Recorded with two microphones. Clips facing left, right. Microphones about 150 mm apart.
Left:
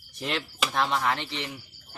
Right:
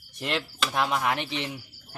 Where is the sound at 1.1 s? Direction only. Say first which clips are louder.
Right 1 dB; 15° right (ahead or behind).